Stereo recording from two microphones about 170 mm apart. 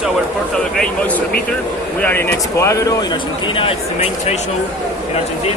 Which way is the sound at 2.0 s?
10° left (ahead or behind).